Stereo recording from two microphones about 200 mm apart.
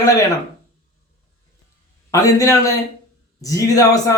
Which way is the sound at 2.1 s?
15° left (ahead or behind).